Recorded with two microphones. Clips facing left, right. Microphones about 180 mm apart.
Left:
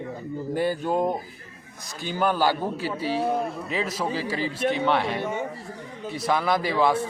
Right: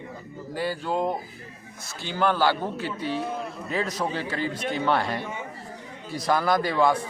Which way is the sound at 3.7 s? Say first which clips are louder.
Right 2 dB; 5° left (ahead or behind).